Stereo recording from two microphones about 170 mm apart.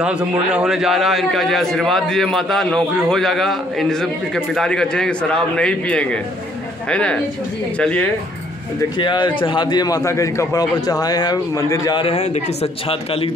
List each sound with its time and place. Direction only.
0.0 s a man's voice: 5° right (ahead or behind)
8.9 s a man's voice: 25° left (ahead or behind)